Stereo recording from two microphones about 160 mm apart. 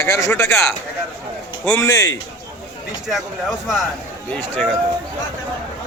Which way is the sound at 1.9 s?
20° left (ahead or behind).